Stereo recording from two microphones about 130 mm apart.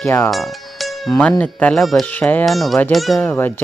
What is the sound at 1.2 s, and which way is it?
Speech, 10° left (ahead or behind).